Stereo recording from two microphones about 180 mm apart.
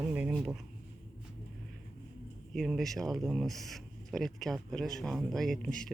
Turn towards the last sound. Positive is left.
turn(degrees=5)  # may be behind; listen again after turning